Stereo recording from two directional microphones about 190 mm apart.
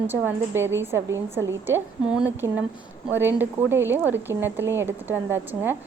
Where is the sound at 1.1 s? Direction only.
80° right.